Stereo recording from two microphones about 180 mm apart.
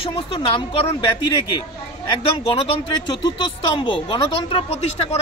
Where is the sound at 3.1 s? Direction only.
25° left (ahead or behind).